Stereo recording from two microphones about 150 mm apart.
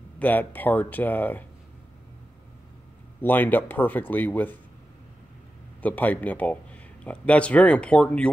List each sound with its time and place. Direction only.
0.2 s speech: 10° left (ahead or behind)
3.2 s speech: 10° left (ahead or behind)
5.8 s speech: 10° left (ahead or behind)